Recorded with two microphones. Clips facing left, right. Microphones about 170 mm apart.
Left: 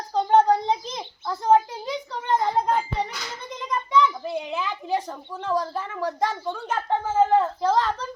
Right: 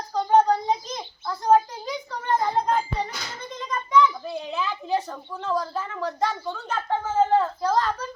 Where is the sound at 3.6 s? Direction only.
20° left (ahead or behind).